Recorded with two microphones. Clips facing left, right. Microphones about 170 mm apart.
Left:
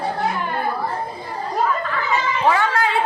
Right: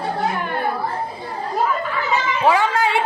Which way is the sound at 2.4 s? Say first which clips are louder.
Right 2 dB; 15° right (ahead or behind).